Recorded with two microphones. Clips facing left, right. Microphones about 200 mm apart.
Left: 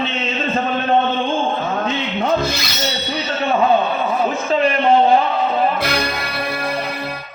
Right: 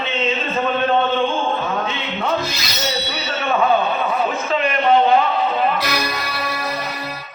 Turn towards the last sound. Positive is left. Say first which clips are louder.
# left 2 dB
turn(degrees=55)  # may be behind; listen again after turning